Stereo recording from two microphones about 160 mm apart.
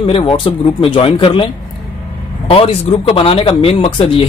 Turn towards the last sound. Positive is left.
turn(degrees=35)  # may be behind; listen again after turning